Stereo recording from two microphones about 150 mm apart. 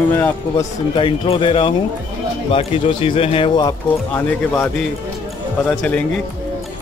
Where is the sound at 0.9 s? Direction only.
35° left (ahead or behind).